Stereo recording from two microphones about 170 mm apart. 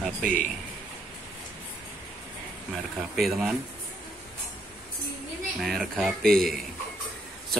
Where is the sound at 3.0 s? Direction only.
Centre (ahead or behind).